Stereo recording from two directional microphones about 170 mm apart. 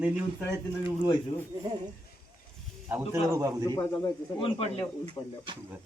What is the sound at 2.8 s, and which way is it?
Speech, 10° right (ahead or behind).